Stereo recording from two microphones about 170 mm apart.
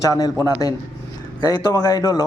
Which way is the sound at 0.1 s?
20° left (ahead or behind).